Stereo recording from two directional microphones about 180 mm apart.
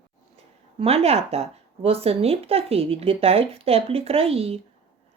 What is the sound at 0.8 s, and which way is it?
Speech, 35° right (ahead or behind).